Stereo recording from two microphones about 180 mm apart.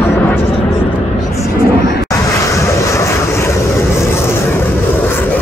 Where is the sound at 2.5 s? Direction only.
15° left (ahead or behind).